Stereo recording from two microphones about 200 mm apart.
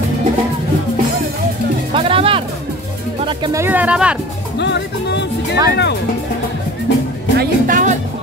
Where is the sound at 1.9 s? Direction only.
30° right (ahead or behind); by 4.1 s 5° right (ahead or behind).